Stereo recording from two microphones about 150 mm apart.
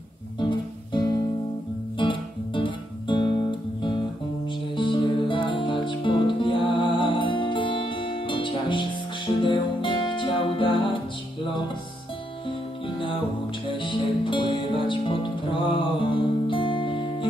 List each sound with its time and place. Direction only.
0.4 s guitar: 30° left (ahead or behind)
2.0 s music: 35° left (ahead or behind)
4.5 s music: 35° left (ahead or behind)
12.4 s music: 35° left (ahead or behind)